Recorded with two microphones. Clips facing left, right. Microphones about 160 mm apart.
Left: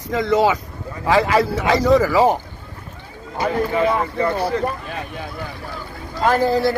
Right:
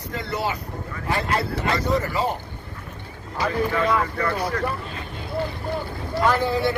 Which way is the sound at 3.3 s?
25° left (ahead or behind).